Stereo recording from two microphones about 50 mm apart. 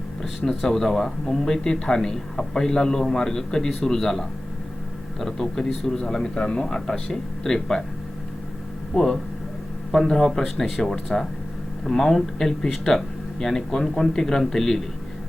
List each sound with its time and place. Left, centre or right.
0.2 s a man's voice: centre
8.9 s speech: centre
9.9 s speech: centre